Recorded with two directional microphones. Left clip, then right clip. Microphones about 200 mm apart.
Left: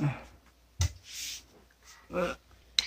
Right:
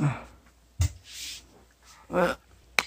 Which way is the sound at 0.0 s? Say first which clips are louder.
Right 4 dB; 10° right (ahead or behind).